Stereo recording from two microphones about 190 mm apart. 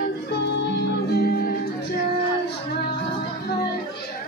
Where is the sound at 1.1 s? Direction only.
55° left (ahead or behind).